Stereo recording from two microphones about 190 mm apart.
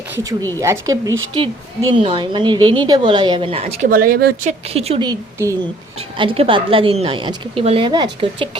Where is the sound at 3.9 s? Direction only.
50° right (ahead or behind).